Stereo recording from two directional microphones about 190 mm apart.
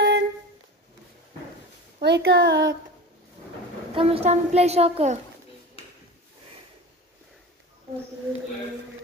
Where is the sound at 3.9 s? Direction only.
30° right (ahead or behind).